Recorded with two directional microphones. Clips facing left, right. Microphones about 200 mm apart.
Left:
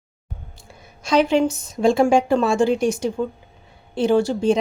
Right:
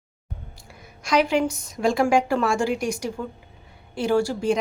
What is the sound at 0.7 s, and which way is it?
A woman's voice, 25° left (ahead or behind).